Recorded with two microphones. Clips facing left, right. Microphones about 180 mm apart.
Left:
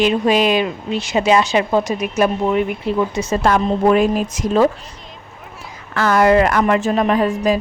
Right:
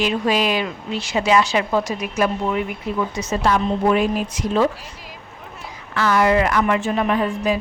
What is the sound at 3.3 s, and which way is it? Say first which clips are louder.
A woman's voice: left 2 dB; 50° left (ahead or behind).